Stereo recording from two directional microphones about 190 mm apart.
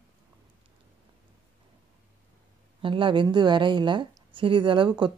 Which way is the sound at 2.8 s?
25° right (ahead or behind).